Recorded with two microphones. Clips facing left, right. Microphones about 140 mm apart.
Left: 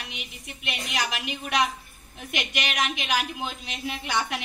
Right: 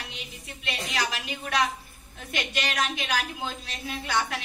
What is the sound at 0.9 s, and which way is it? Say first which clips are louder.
A woman's voice: left 1 dB; 20° left (ahead or behind).